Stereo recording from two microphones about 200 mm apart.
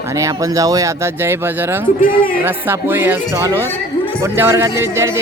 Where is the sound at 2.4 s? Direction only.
10° right (ahead or behind).